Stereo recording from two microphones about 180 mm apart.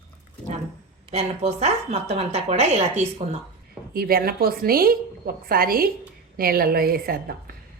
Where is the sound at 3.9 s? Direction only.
55° right (ahead or behind).